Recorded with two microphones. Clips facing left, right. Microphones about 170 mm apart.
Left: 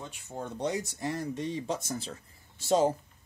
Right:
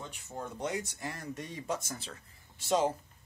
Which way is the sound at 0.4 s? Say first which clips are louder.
Left 3 dB; 30° left (ahead or behind).